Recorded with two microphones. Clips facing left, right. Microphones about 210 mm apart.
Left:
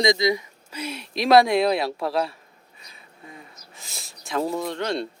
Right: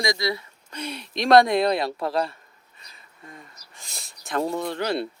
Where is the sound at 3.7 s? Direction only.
Centre (ahead or behind).